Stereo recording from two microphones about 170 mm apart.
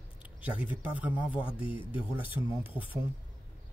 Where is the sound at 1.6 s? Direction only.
30° left (ahead or behind).